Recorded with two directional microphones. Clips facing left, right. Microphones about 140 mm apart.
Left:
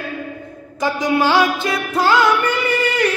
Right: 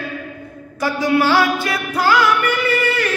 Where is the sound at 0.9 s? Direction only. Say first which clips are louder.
Right 1 dB; 20° left (ahead or behind).